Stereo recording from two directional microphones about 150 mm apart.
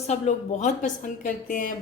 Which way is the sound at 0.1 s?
50° left (ahead or behind).